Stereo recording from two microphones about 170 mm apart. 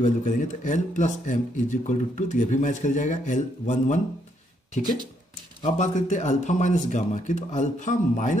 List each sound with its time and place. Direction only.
0.0 s speech: 45° left (ahead or behind)
5.6 s speech: 45° left (ahead or behind)